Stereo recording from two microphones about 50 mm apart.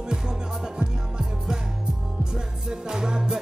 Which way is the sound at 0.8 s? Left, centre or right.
Centre.